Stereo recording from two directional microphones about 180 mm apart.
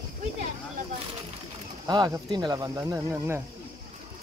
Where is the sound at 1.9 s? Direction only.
25° right (ahead or behind).